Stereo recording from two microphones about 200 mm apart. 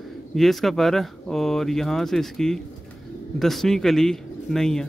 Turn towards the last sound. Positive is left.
turn(degrees=5)  # may be behind; listen again after turning